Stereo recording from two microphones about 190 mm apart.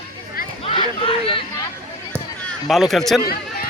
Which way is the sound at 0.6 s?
30° left (ahead or behind).